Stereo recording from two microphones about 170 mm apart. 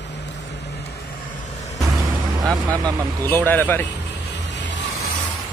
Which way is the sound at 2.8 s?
20° right (ahead or behind).